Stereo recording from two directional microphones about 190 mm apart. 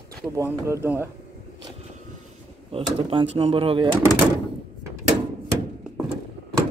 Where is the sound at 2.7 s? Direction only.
30° right (ahead or behind).